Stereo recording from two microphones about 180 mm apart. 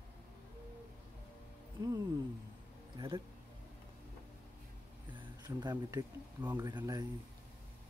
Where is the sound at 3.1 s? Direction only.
30° right (ahead or behind).